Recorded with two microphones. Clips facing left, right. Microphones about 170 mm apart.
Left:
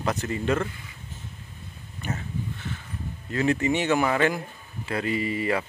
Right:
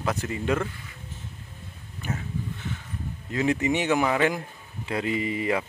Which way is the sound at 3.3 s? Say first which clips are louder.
Left 1 dB; 15° right (ahead or behind).